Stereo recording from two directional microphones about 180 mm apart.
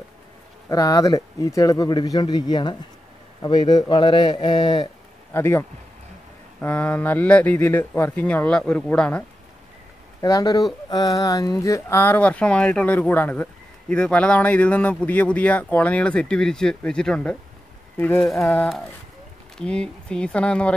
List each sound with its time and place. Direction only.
0.7 s a man's voice: 20° left (ahead or behind); by 9.2 s 5° left (ahead or behind)
10.2 s speech: 20° left (ahead or behind)